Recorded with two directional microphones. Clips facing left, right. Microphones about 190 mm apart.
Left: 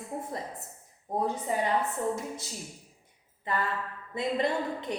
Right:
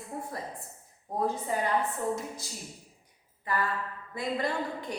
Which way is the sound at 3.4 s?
25° left (ahead or behind).